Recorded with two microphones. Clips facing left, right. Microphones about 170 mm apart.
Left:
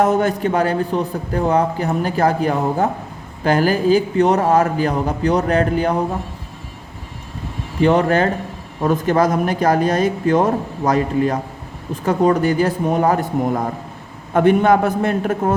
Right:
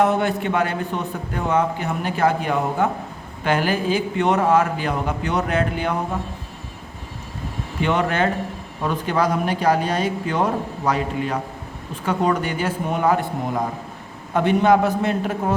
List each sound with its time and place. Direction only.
0.0 s a man's voice: 40° left (ahead or behind)
7.8 s a man's voice: 35° left (ahead or behind)